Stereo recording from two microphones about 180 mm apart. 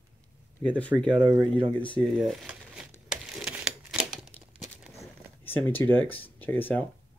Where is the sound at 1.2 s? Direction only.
25° right (ahead or behind).